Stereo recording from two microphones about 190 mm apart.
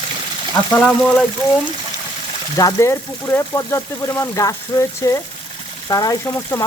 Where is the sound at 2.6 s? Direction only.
15° left (ahead or behind).